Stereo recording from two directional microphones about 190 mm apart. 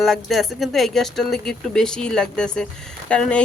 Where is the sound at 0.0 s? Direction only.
Centre (ahead or behind).